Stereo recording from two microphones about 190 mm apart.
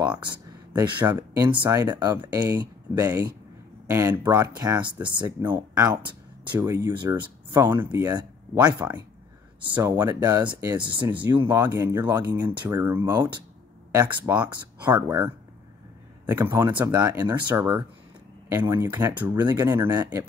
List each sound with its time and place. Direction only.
0.0 s speech: 25° right (ahead or behind)
4.6 s speech: 20° right (ahead or behind)
5.4 s speech: 10° right (ahead or behind)
5.9 s a sound: 25° right (ahead or behind)
6.5 s speech: 15° right (ahead or behind)
11.4 s speech: 15° right (ahead or behind)
12.4 s speech: 20° right (ahead or behind)